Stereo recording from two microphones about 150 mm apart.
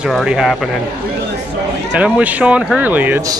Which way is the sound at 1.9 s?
10° right (ahead or behind).